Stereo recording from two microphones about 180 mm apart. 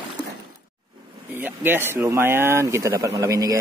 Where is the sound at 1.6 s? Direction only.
10° right (ahead or behind).